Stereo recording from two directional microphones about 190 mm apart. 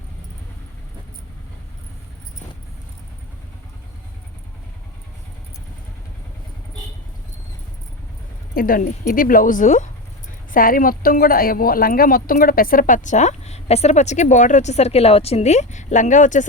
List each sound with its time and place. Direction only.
8.5 s speech: 50° left (ahead or behind)